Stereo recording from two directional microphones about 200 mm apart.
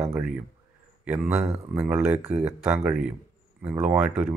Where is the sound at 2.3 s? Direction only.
35° right (ahead or behind).